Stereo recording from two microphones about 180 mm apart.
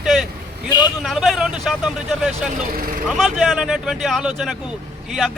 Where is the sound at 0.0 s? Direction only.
Centre (ahead or behind).